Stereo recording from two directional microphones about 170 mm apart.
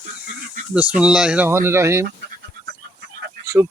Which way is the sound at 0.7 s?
5° right (ahead or behind).